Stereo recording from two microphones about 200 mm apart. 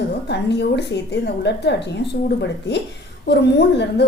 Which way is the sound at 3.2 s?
55° left (ahead or behind).